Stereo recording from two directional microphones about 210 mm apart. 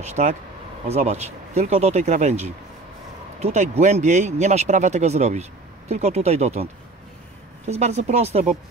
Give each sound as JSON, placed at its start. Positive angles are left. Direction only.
{"t": 0.0, "sound": "speech", "side_deg": -35}